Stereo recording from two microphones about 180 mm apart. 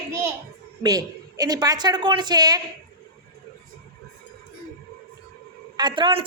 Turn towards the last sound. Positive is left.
turn(degrees=-30)  # may be behind; listen again after turning